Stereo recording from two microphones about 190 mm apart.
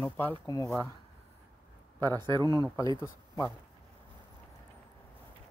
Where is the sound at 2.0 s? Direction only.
20° right (ahead or behind).